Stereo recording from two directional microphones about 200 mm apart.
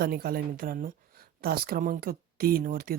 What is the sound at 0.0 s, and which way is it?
Speech, 50° right (ahead or behind).